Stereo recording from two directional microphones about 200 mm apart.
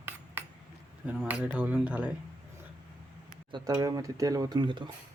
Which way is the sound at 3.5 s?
20° right (ahead or behind).